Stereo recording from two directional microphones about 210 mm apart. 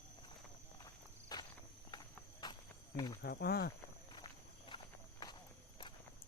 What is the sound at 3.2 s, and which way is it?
Speech, 45° left (ahead or behind).